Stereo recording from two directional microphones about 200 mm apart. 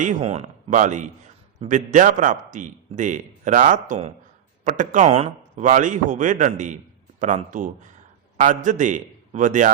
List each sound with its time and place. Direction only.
0.0 s a man's voice: 35° right (ahead or behind)